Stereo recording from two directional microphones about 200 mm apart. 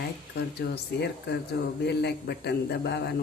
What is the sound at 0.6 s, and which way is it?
Speech, 55° left (ahead or behind).